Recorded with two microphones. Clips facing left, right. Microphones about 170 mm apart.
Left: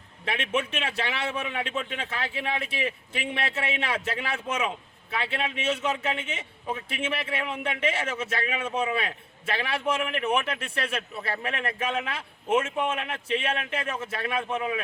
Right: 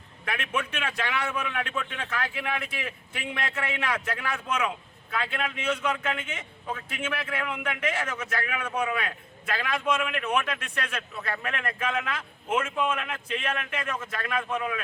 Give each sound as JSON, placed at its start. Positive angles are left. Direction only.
{"t": 0.3, "sound": "a man's voice", "side_deg": 25}